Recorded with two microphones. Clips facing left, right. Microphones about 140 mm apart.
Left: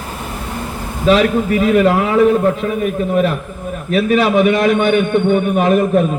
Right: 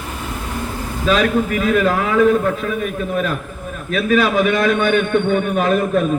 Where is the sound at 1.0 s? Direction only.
25° left (ahead or behind).